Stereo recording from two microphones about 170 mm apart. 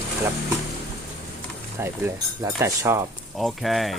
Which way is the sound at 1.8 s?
15° right (ahead or behind).